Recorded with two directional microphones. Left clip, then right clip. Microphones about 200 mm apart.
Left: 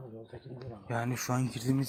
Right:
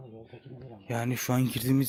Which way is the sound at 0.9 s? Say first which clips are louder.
Right 3 dB; 40° right (ahead or behind).